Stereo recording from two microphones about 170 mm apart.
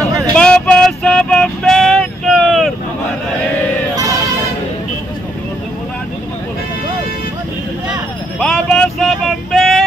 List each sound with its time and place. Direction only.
0.4 s vehicle: 5° left (ahead or behind)
3.9 s a sound: 20° right (ahead or behind)
8.4 s vehicle: 5° left (ahead or behind)